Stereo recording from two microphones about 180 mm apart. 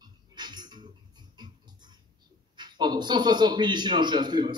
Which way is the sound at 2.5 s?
25° right (ahead or behind).